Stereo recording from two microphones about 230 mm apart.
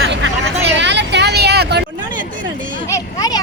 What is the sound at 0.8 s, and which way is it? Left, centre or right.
Vehicle, right.